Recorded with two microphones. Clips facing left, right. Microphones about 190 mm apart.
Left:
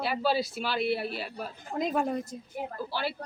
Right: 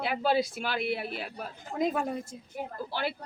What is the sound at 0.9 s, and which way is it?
Speech, 20° right (ahead or behind).